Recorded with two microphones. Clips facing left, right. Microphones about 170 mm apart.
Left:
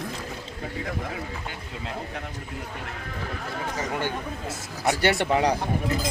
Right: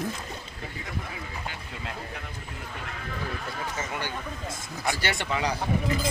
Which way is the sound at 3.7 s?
40° left (ahead or behind).